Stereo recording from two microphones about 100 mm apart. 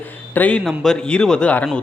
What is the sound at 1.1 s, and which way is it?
Speech, 10° left (ahead or behind).